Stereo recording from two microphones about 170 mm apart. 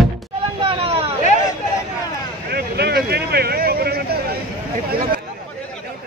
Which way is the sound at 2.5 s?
70° right (ahead or behind).